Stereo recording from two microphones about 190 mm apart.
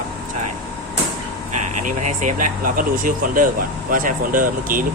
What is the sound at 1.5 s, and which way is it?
Speech, 40° right (ahead or behind).